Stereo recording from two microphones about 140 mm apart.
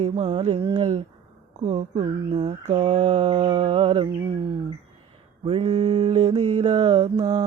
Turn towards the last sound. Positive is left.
turn(degrees=-30)  # may be behind; listen again after turning